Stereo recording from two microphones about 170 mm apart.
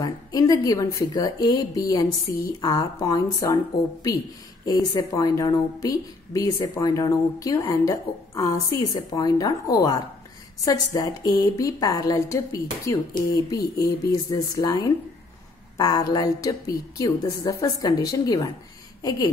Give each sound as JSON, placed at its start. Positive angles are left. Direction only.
{"t": 0.0, "sound": "a woman's voice", "side_deg": 20}
{"t": 4.6, "sound": "a woman's voice", "side_deg": 20}